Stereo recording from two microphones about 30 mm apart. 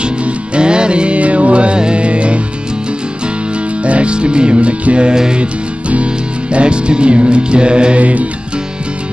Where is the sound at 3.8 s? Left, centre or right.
Right.